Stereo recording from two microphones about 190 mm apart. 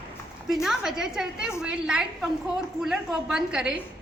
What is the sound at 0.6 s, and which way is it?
A woman's voice, centre (ahead or behind).